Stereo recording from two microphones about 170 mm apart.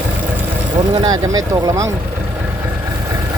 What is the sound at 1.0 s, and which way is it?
Speech, 20° right (ahead or behind).